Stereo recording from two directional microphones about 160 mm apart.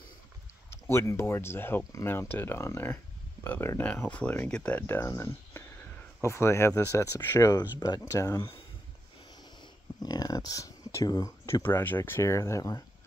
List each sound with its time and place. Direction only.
0.7 s speech: 15° left (ahead or behind)
9.6 s speech: 25° left (ahead or behind)